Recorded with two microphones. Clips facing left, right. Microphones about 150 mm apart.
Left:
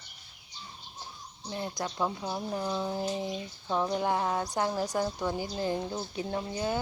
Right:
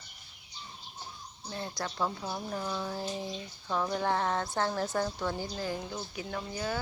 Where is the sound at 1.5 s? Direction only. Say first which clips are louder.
Left 3 dB; 20° left (ahead or behind).